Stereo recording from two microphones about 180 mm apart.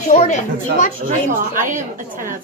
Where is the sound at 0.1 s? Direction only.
45° left (ahead or behind).